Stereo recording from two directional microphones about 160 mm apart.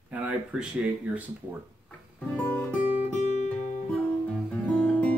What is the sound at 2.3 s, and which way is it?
Music, 10° left (ahead or behind).